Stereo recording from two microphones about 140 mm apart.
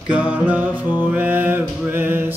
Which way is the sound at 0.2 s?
10° right (ahead or behind).